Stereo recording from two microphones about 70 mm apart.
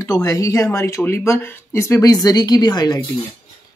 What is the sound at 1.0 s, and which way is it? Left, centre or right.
A woman's voice, left.